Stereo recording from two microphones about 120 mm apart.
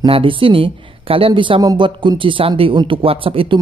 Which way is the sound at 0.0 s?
45° right (ahead or behind).